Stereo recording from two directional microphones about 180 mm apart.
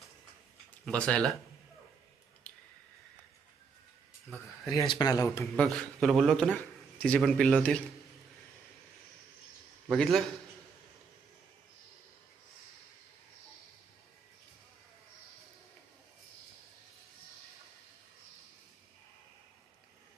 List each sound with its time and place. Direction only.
0.9 s a man's voice: 5° left (ahead or behind)
2.5 s squish: 5° left (ahead or behind)
4.6 s a man's voice: 15° left (ahead or behind)
5.6 s a man's voice: centre (ahead or behind)
9.9 s a man's voice: centre (ahead or behind)